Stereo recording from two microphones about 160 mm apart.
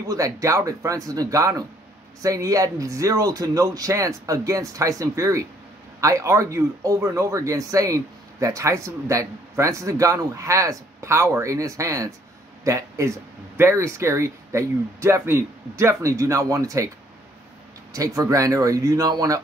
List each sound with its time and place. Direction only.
0.0 s a man's voice: 20° right (ahead or behind)
17.9 s a man's voice: 20° right (ahead or behind)